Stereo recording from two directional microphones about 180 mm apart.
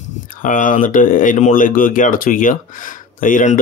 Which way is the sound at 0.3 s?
45° left (ahead or behind).